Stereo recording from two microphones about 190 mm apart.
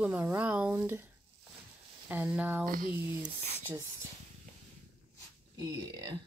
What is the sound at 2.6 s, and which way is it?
Speech, 45° right (ahead or behind).